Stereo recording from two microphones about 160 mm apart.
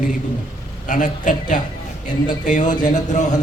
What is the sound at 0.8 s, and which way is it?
Speech, 50° left (ahead or behind).